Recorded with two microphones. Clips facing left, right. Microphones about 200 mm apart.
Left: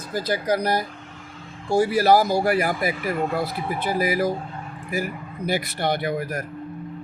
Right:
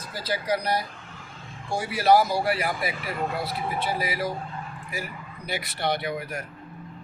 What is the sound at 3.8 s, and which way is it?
Speech, 50° left (ahead or behind).